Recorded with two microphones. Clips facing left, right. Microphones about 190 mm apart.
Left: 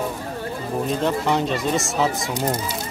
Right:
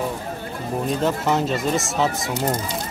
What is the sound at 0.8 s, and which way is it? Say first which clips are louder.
Speech: even; centre (ahead or behind).